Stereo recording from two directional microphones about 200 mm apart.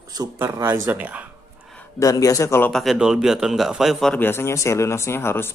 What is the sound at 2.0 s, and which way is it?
Speech, 15° left (ahead or behind).